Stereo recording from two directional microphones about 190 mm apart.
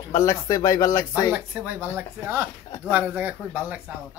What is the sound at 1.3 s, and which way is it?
Speech, 10° right (ahead or behind).